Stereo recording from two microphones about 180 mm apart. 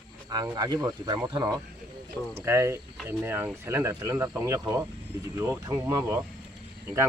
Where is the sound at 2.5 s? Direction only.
15° right (ahead or behind).